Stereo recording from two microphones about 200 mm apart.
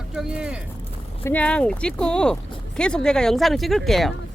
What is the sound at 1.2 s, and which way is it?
Speech, 10° left (ahead or behind).